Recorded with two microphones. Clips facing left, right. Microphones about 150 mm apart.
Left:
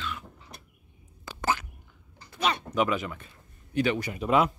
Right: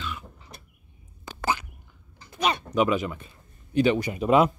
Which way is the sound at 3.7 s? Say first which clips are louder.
Right 5 dB; 20° right (ahead or behind).